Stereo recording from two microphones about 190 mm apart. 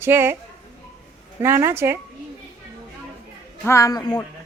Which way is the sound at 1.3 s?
15° right (ahead or behind).